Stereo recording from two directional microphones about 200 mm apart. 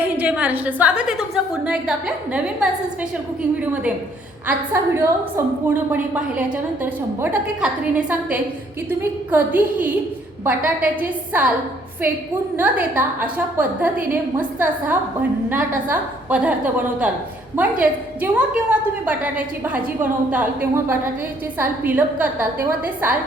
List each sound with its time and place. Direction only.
0.2 s a woman's voice: 5° right (ahead or behind)
12.5 s a woman's voice: 10° right (ahead or behind)